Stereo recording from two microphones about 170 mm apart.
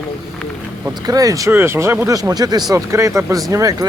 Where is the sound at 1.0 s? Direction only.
20° right (ahead or behind).